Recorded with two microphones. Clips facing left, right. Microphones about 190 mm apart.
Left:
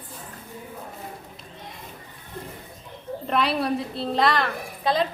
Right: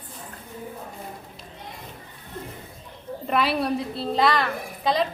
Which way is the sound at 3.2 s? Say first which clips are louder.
Even; centre (ahead or behind).